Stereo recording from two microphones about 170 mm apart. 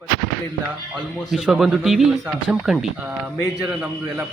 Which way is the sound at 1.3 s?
Centre (ahead or behind).